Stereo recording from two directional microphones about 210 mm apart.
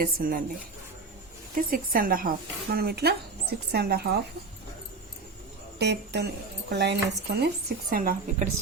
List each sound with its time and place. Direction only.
0.0 s speech: 40° right (ahead or behind)
1.5 s a woman's voice: 40° right (ahead or behind)
5.8 s a woman's voice: 55° right (ahead or behind)